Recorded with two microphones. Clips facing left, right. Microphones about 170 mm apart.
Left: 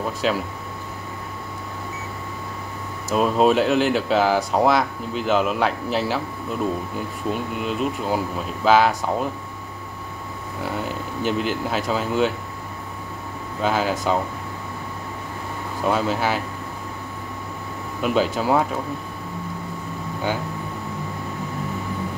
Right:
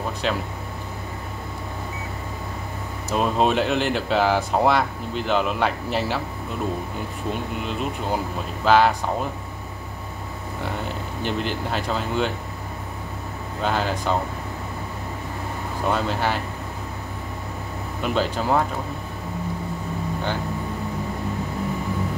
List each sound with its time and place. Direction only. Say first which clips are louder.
0.2 s speech: left 3 dB; 5° left (ahead or behind)
3.2 s speech: left 3 dB; centre (ahead or behind)
7.6 s speech: left 6 dB; 5° left (ahead or behind)
11.2 s speech: left 3 dB; 5° left (ahead or behind)
13.6 s speech: left 2 dB; 5° left (ahead or behind)
15.9 s speech: left 2 dB; 5° left (ahead or behind)
18.0 s speech: left 3 dB; 5° left (ahead or behind)